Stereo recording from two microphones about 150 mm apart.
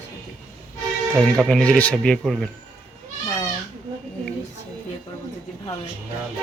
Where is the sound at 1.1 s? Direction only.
5° left (ahead or behind).